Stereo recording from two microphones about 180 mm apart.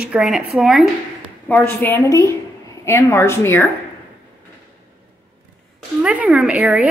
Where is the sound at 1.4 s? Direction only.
10° left (ahead or behind).